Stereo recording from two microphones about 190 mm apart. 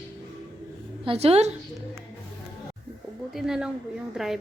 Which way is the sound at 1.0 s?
30° right (ahead or behind).